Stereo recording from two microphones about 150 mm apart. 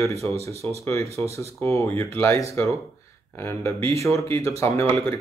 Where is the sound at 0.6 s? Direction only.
10° left (ahead or behind).